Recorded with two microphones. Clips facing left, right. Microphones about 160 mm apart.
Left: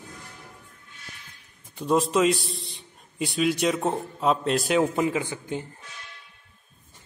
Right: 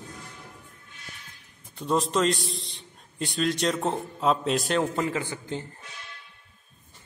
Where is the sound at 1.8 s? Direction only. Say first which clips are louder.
Left 3 dB; 5° left (ahead or behind).